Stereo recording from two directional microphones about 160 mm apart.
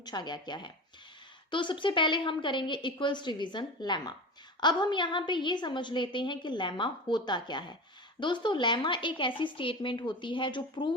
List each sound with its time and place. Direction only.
0.0 s a woman's voice: 25° left (ahead or behind)